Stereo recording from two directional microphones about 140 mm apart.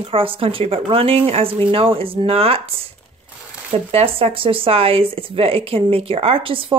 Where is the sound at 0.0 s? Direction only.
40° right (ahead or behind).